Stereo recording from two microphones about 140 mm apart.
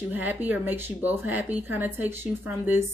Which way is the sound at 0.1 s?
10° right (ahead or behind).